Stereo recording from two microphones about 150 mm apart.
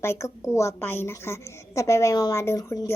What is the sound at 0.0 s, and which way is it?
A woman's voice, 15° left (ahead or behind).